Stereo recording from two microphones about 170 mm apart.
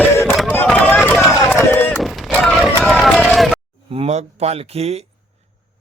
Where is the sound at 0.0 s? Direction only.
15° left (ahead or behind).